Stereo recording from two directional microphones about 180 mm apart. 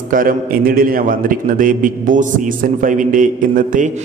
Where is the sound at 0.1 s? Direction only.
50° right (ahead or behind).